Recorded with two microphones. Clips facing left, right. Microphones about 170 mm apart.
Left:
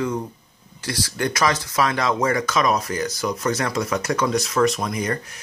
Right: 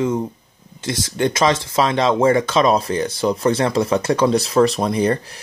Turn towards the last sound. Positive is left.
turn(degrees=-30)  # may be behind; listen again after turning